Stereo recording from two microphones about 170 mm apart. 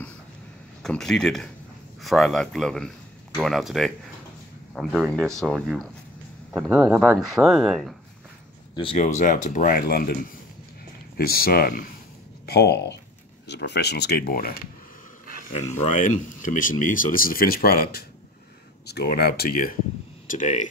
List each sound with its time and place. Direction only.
0.8 s speech: 5° left (ahead or behind)
6.7 s speech: 15° right (ahead or behind)
7.2 s speech: centre (ahead or behind)
8.9 s speech: 45° left (ahead or behind); by 10.1 s 60° left (ahead or behind)
11.1 s speech: 60° left (ahead or behind)
12.4 s speech: 70° left (ahead or behind)
15.7 s speech: 45° left (ahead or behind); by 19.7 s 65° left (ahead or behind)
20.2 s speech: 45° left (ahead or behind)